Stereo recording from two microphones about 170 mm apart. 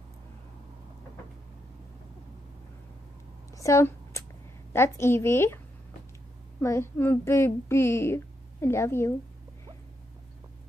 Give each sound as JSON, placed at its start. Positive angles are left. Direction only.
{"t": 3.5, "sound": "a sound", "side_deg": 15}
{"t": 4.7, "sound": "a woman's voice", "side_deg": 15}
{"t": 6.6, "sound": "a woman's voice", "side_deg": 15}